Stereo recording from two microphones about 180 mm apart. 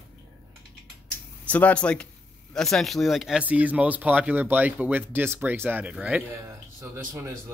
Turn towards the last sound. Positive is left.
turn(degrees=-15)  # may be behind; listen again after turning